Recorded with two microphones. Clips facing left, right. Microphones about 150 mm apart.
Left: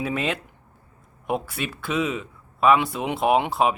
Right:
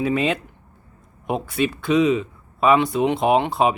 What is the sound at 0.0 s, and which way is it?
Speech, centre (ahead or behind).